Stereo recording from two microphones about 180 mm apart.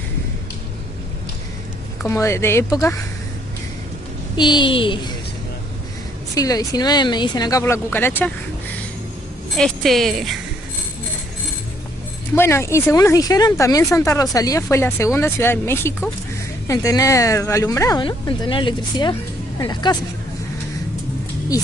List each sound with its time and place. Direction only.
2.0 s speech: 15° left (ahead or behind)
4.4 s speech: 25° left (ahead or behind)
6.3 s speech: 20° left (ahead or behind)
9.6 s speech: centre (ahead or behind)
12.4 s speech: 15° left (ahead or behind)